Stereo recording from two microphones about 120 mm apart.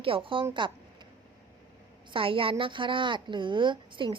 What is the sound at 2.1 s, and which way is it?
A woman's voice, 50° right (ahead or behind).